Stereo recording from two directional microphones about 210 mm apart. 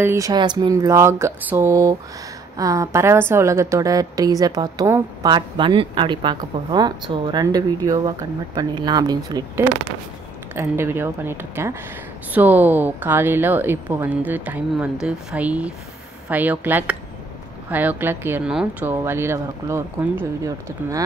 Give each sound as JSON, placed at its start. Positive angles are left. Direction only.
{"t": 0.0, "sound": "a woman's voice", "side_deg": -15}